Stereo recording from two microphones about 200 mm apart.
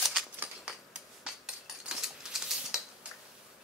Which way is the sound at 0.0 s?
Centre (ahead or behind).